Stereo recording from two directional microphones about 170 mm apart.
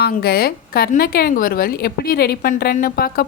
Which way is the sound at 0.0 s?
65° left (ahead or behind).